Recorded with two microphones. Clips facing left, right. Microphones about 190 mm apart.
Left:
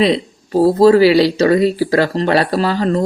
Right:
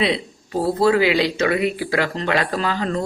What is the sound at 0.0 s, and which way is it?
Speech, 35° left (ahead or behind).